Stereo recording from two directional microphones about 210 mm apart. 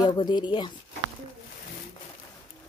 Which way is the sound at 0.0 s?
20° left (ahead or behind).